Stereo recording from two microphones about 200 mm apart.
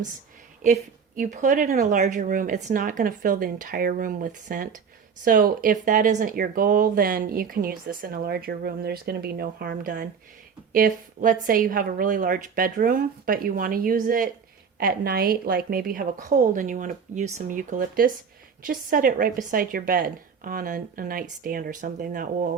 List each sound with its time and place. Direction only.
0.6 s a woman's voice: 40° right (ahead or behind)